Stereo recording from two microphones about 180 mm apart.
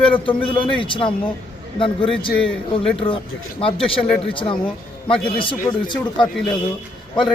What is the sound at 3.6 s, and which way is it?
A man's voice, 30° left (ahead or behind).